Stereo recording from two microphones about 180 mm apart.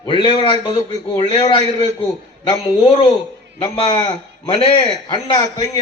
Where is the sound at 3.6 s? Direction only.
25° left (ahead or behind).